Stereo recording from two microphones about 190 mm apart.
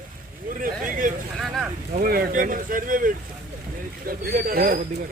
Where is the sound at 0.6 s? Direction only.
45° right (ahead or behind).